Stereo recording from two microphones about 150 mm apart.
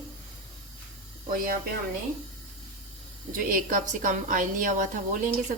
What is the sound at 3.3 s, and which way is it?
A woman's voice, 60° right (ahead or behind).